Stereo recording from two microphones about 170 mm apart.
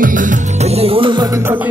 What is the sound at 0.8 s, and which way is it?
Music, 35° right (ahead or behind).